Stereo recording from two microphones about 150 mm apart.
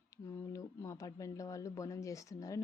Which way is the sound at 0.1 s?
20° left (ahead or behind).